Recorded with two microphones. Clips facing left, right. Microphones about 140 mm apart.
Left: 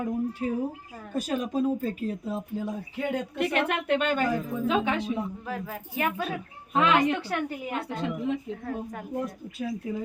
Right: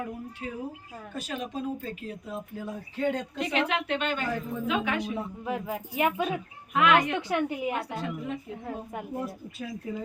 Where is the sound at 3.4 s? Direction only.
55° left (ahead or behind).